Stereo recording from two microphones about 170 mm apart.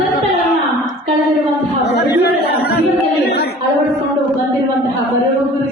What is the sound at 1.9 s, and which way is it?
Chatter, 80° left.